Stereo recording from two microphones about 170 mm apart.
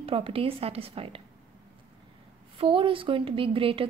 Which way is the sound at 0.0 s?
35° right (ahead or behind).